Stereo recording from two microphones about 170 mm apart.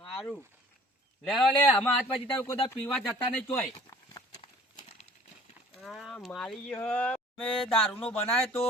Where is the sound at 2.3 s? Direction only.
10° left (ahead or behind).